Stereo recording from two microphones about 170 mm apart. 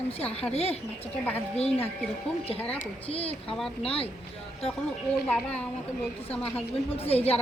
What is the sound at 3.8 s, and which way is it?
Speech, 35° left (ahead or behind).